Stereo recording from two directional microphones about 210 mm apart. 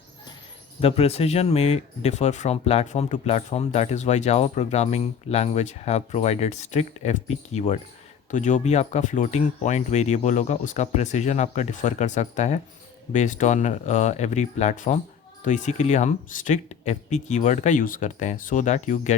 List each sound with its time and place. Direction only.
0.8 s speech: 30° left (ahead or behind)